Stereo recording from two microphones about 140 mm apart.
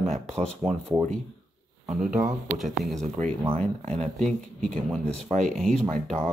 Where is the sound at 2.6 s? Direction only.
Centre (ahead or behind).